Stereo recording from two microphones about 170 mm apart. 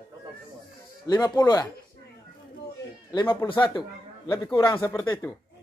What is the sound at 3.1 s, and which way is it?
Speech, 25° left (ahead or behind).